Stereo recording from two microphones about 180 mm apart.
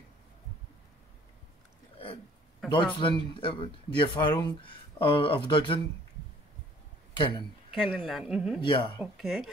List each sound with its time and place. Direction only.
2.7 s a man's voice: 25° left (ahead or behind)
7.2 s a man's voice: 25° left (ahead or behind)
7.9 s speech: centre (ahead or behind)
8.5 s a man's voice: 25° left (ahead or behind)
9.0 s speech: centre (ahead or behind)